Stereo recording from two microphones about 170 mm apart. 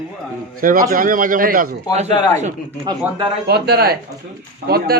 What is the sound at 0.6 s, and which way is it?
A man's voice, 55° right (ahead or behind).